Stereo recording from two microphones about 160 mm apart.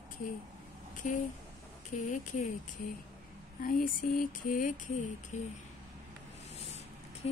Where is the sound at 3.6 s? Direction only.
60° left (ahead or behind).